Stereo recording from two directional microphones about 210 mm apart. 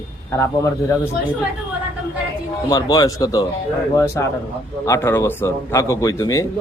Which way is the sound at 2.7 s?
20° left (ahead or behind).